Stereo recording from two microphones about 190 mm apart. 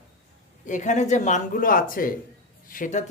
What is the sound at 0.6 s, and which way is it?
Speech, 40° left (ahead or behind).